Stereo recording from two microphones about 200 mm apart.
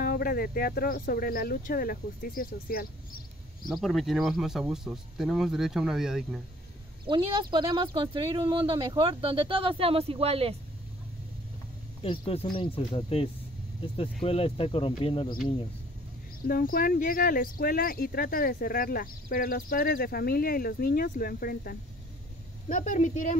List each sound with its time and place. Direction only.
0.0 s speech: 50° left (ahead or behind)
3.6 s speech: centre (ahead or behind)
7.1 s speech: 20° right (ahead or behind)
12.0 s speech: 30° left (ahead or behind)
16.4 s a woman's voice: 45° left (ahead or behind)